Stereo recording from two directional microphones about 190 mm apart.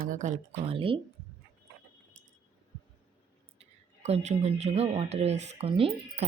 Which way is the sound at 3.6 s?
35° right (ahead or behind).